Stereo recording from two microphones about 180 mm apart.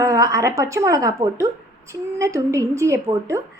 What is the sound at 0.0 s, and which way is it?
A woman's voice, 20° right (ahead or behind).